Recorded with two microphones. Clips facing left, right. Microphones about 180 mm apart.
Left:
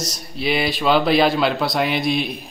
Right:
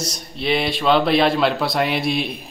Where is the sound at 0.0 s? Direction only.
Centre (ahead or behind).